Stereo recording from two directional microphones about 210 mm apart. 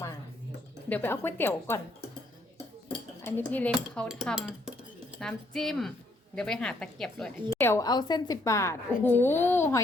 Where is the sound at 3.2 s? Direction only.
10° left (ahead or behind).